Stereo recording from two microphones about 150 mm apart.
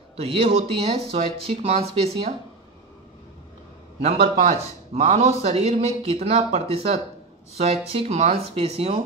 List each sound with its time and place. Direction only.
0.1 s speech: 40° right (ahead or behind)
4.0 s a man's voice: 45° right (ahead or behind)